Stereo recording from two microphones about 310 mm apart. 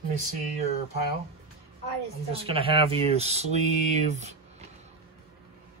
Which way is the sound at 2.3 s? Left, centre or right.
Centre.